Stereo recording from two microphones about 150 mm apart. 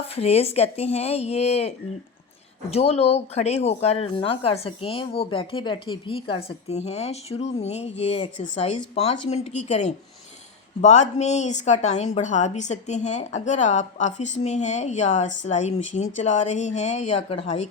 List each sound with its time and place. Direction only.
0.2 s a woman's voice: 45° left (ahead or behind)